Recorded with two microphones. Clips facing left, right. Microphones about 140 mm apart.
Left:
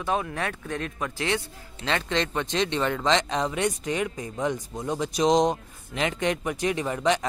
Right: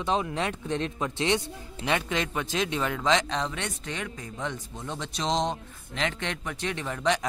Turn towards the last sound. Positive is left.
turn(degrees=10)  # may be behind; listen again after turning